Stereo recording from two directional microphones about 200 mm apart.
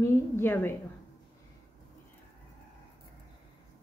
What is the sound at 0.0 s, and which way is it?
Speech, 10° left (ahead or behind).